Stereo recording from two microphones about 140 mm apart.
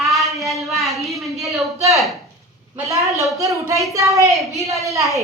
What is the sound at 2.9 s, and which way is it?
A woman's voice, 20° right (ahead or behind).